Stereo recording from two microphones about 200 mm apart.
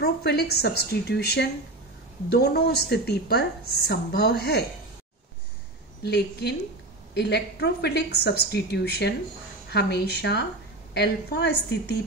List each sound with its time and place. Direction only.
0.0 s a woman's voice: 50° left (ahead or behind)
6.0 s a woman's voice: 55° left (ahead or behind)